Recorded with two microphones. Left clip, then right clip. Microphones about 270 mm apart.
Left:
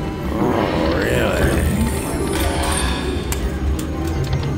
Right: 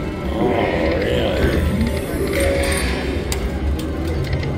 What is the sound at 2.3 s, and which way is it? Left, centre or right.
Music, left.